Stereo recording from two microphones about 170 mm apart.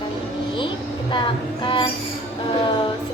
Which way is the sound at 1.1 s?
30° left (ahead or behind).